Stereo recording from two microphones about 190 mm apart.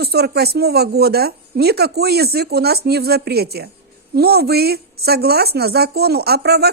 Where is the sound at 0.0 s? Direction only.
55° right (ahead or behind).